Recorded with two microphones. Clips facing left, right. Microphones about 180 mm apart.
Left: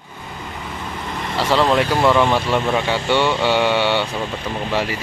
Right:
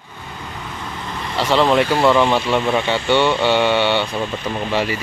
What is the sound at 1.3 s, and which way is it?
Speech, centre (ahead or behind).